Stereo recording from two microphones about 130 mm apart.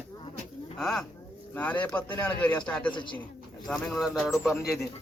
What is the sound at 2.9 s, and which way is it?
Speech, 40° left (ahead or behind).